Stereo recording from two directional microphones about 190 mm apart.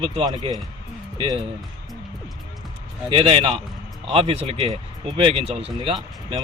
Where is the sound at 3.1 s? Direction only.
30° right (ahead or behind).